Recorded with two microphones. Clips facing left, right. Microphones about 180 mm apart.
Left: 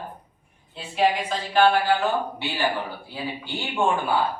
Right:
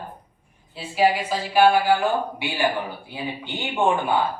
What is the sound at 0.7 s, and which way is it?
Speech, 5° right (ahead or behind).